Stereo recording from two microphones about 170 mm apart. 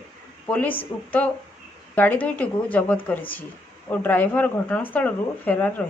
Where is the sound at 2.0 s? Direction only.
10° left (ahead or behind).